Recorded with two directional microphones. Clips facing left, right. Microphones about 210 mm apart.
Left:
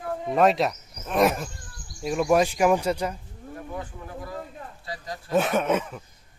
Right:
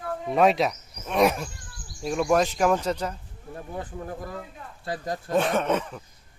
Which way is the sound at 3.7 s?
35° right (ahead or behind).